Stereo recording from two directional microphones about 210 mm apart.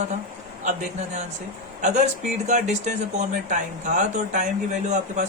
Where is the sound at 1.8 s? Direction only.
35° right (ahead or behind).